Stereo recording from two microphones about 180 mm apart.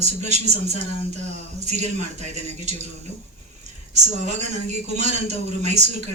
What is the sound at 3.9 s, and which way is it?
A man's voice, 40° right (ahead or behind).